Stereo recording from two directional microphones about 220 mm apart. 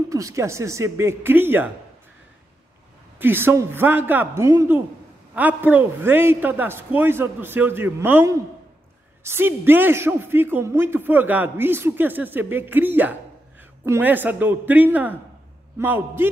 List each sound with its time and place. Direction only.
0.1 s a man's voice: 15° right (ahead or behind)
3.2 s a man's voice: 10° right (ahead or behind)